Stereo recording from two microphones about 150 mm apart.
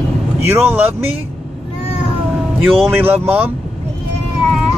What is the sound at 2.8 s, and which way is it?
Speech, 15° right (ahead or behind).